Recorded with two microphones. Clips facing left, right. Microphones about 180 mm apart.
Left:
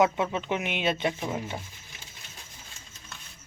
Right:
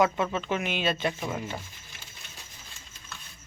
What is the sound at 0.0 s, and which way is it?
Speech, 20° left (ahead or behind).